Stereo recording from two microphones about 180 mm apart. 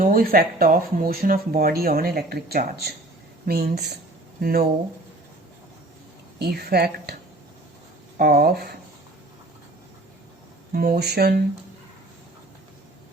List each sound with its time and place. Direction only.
0.0 s speech: 55° right (ahead or behind)
6.4 s speech: 60° right (ahead or behind)
8.2 s speech: 55° right (ahead or behind)
10.7 s speech: 60° right (ahead or behind)